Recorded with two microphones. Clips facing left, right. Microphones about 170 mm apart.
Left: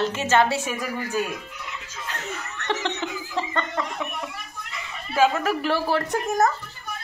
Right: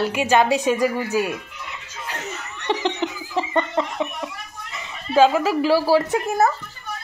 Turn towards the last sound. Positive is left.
turn(degrees=0)  # may be behind; listen again after turning